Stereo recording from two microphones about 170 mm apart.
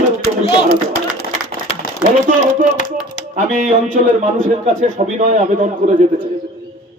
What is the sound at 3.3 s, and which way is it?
A man's voice, 50° right (ahead or behind).